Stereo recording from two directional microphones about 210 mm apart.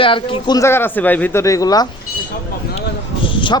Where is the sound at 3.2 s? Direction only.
25° left (ahead or behind).